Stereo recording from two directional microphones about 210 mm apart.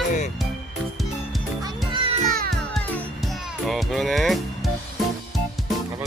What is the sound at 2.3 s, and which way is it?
Music, 45° right (ahead or behind).